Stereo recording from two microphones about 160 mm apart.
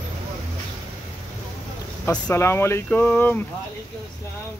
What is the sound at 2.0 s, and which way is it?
Speech, 15° left (ahead or behind).